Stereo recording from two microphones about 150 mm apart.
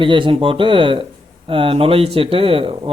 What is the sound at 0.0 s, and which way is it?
Speech, 35° right (ahead or behind).